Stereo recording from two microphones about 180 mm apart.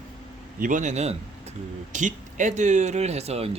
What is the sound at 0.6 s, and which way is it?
Speech, 45° right (ahead or behind).